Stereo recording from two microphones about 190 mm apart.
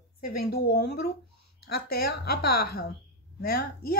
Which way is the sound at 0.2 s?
50° left (ahead or behind).